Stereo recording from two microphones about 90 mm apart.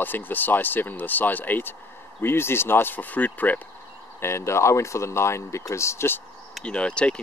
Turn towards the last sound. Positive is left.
turn(degrees=10)  # may be behind; listen again after turning